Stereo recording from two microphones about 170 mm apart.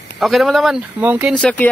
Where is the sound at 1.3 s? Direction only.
5° left (ahead or behind).